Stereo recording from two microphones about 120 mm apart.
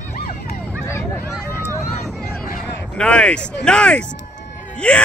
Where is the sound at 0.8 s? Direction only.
20° left (ahead or behind).